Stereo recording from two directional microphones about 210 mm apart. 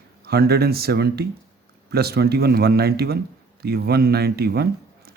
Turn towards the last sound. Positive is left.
turn(degrees=-50)  # may be behind; listen again after turning